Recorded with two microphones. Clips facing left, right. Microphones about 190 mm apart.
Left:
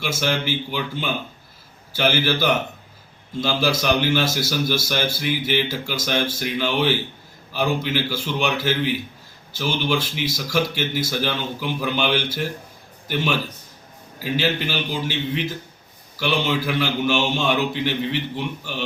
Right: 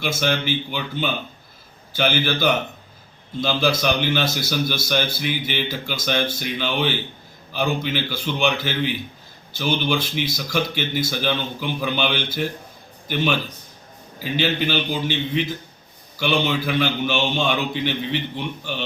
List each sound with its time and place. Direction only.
0.0 s a man's voice: 5° left (ahead or behind)
14.2 s a man's voice: 5° left (ahead or behind)
16.1 s a man's voice: 5° left (ahead or behind)